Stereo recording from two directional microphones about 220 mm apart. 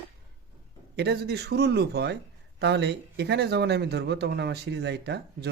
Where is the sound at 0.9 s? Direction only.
50° right (ahead or behind).